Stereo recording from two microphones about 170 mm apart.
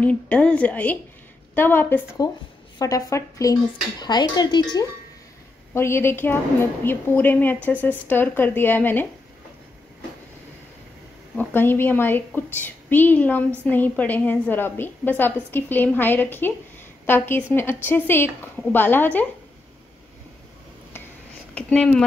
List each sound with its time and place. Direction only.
0.0 s a woman's voice: 5° left (ahead or behind); by 4.8 s 25° left (ahead or behind)
5.7 s a woman's voice: 15° left (ahead or behind)
11.3 s a woman's voice: 10° left (ahead or behind)
21.5 s a woman's voice: 5° left (ahead or behind)